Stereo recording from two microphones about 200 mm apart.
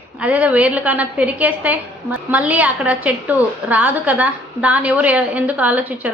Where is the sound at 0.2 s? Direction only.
5° right (ahead or behind).